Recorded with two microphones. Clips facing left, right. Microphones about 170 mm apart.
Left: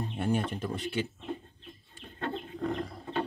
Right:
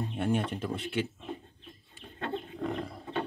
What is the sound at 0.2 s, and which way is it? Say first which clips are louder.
Speech: even; centre (ahead or behind).